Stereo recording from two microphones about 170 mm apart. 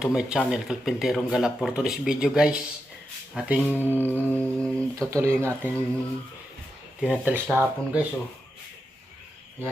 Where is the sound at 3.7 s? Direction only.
10° left (ahead or behind).